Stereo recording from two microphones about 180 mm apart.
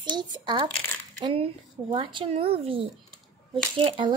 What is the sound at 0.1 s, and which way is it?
Speech, 25° right (ahead or behind).